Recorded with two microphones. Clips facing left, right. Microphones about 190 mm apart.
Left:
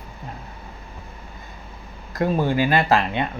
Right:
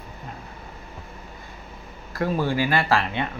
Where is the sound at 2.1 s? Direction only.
20° left (ahead or behind).